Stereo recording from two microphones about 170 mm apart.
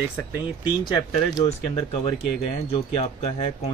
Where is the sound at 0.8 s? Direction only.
25° left (ahead or behind).